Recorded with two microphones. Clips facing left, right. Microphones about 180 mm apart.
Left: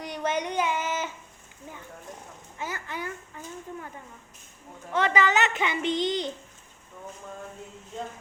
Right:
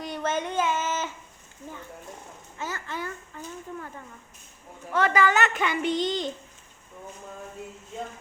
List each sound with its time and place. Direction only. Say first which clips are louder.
0.0 s child singing: even; 15° left (ahead or behind)
2.6 s a child's voice: right 1 dB; 15° left (ahead or behind)
4.9 s a child's voice: right 1 dB; 20° left (ahead or behind)